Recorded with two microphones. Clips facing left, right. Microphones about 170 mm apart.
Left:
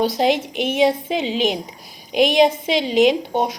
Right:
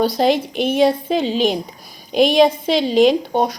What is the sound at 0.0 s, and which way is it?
A woman's voice, 20° left (ahead or behind).